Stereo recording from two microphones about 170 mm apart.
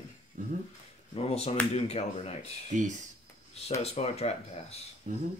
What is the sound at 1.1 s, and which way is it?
Speech, 35° left (ahead or behind).